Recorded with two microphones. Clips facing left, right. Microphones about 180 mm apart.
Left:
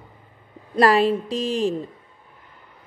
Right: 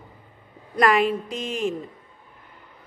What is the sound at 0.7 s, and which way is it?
A woman's voice, 30° left (ahead or behind).